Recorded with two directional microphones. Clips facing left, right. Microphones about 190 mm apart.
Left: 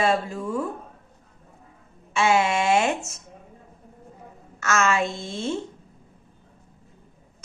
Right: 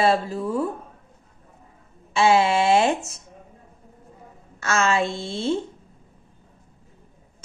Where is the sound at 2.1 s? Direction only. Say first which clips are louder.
Right 3 dB; 30° right (ahead or behind).